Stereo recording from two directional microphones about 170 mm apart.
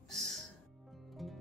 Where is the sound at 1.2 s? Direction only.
Centre (ahead or behind).